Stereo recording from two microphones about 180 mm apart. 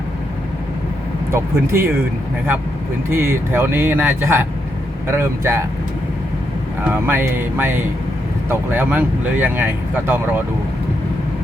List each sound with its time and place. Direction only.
1.3 s speech: 10° right (ahead or behind)
3.1 s speech: 15° right (ahead or behind)
6.8 s speech: 10° right (ahead or behind)